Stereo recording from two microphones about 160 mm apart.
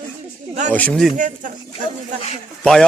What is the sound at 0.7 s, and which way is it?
Speech, 10° left (ahead or behind).